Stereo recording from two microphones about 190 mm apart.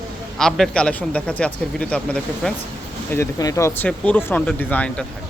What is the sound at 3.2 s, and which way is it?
Speech, 15° left (ahead or behind).